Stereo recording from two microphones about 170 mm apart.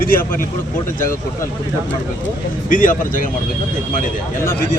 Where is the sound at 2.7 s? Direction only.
50° left (ahead or behind).